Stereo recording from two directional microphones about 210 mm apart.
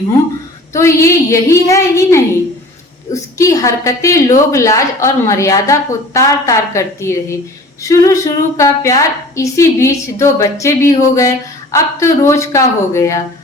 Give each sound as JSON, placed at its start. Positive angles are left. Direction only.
{"t": 0.7, "sound": "a woman's voice", "side_deg": 15}